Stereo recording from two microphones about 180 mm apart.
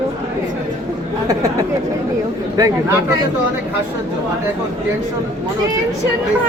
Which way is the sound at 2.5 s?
20° right (ahead or behind).